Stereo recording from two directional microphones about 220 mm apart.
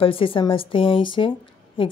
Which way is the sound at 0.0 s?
25° left (ahead or behind).